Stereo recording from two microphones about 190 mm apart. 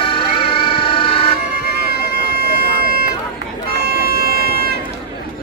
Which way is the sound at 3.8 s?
55° right (ahead or behind).